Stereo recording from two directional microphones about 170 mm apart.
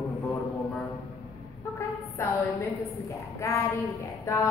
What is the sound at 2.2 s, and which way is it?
Speech, 15° left (ahead or behind).